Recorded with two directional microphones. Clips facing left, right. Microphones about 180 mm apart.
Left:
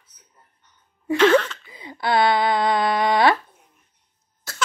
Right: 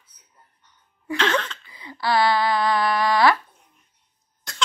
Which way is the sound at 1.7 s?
20° left (ahead or behind).